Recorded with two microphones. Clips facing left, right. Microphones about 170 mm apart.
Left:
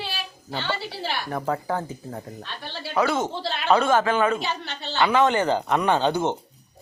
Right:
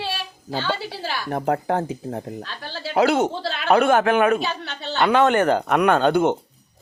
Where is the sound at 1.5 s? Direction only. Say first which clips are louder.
Right 6 dB; 70° right (ahead or behind).